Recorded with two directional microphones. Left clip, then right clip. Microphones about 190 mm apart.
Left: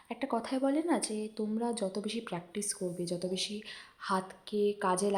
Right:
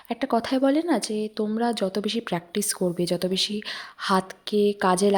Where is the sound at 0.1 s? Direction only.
30° right (ahead or behind).